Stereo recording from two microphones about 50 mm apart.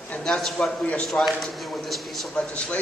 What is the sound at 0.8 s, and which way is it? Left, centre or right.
Speech, left.